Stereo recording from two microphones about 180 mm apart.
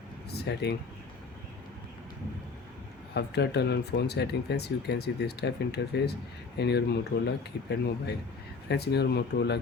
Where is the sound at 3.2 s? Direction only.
65° left (ahead or behind).